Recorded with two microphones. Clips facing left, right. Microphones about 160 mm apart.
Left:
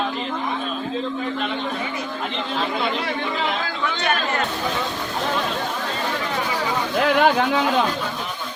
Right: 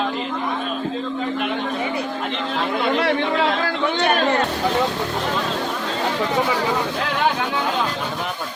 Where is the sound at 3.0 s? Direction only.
70° right (ahead or behind).